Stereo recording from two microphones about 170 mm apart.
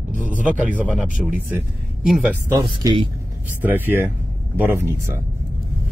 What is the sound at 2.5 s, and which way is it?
Speech, 25° right (ahead or behind).